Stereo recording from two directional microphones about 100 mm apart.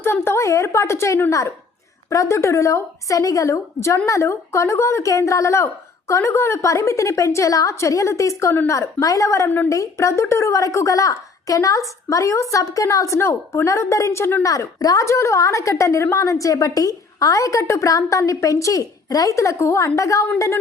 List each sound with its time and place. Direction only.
0.0 s a woman's voice: 25° left (ahead or behind)
9.5 s a woman's voice: 20° left (ahead or behind)
9.7 s a woman's voice: 30° left (ahead or behind)